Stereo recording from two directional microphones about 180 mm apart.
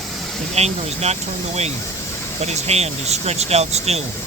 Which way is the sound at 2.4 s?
35° right (ahead or behind).